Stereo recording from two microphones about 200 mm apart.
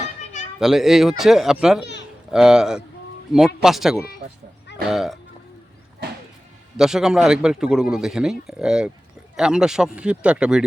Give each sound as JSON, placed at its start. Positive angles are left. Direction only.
{"t": 0.6, "sound": "a man's voice", "side_deg": 0}
{"t": 1.8, "sound": "a sound", "side_deg": 60}
{"t": 2.3, "sound": "a man's voice", "side_deg": -5}
{"t": 6.7, "sound": "a man's voice", "side_deg": -5}